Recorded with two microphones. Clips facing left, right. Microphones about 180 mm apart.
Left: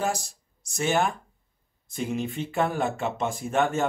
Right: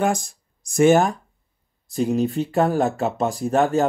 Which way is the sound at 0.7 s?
45° right (ahead or behind).